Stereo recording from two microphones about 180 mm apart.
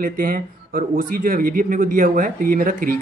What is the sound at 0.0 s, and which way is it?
Speech, 50° right (ahead or behind).